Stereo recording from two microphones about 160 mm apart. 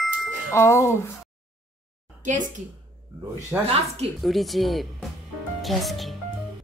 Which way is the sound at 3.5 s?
5° right (ahead or behind).